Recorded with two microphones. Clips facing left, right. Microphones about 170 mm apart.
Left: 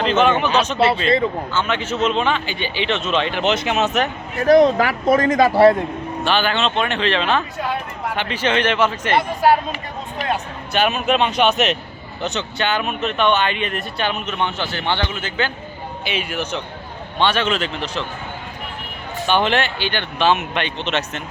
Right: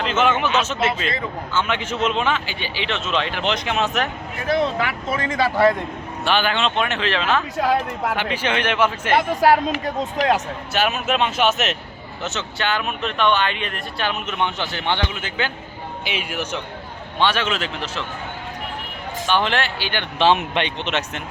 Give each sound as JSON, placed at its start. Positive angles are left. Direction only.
{"t": 0.0, "sound": "speech", "side_deg": -5}
{"t": 1.5, "sound": "a man's voice", "side_deg": -10}
{"t": 4.4, "sound": "speech", "side_deg": 40}
{"t": 6.2, "sound": "speech", "side_deg": -10}
{"t": 7.5, "sound": "speech", "side_deg": -90}
{"t": 8.1, "sound": "speech", "side_deg": -10}
{"t": 9.4, "sound": "speech", "side_deg": -90}
{"t": 10.7, "sound": "a man's voice", "side_deg": -5}
{"t": 14.3, "sound": "a man's voice", "side_deg": -15}
{"t": 19.3, "sound": "a man's voice", "side_deg": 0}
{"t": 20.1, "sound": "speech", "side_deg": -25}